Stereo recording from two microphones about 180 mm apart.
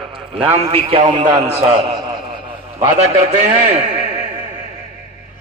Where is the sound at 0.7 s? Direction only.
30° right (ahead or behind).